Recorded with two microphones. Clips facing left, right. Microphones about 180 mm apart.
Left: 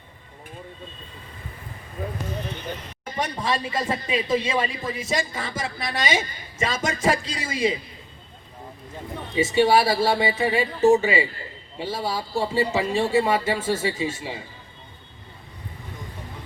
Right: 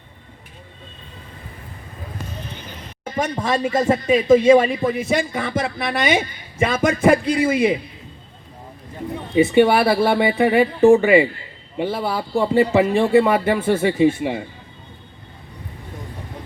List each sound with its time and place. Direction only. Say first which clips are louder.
3.2 s speech: right 5 dB; 45° right (ahead or behind)
9.3 s speech: right 4 dB; 60° right (ahead or behind)